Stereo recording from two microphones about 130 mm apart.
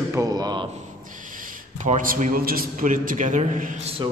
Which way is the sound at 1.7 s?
75° right (ahead or behind).